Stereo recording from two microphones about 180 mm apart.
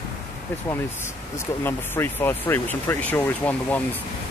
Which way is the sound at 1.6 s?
10° left (ahead or behind).